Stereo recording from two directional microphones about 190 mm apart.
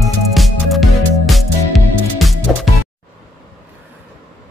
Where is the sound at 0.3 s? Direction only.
Centre (ahead or behind).